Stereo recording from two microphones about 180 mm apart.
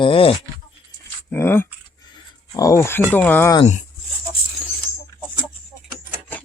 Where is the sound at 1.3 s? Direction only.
10° left (ahead or behind).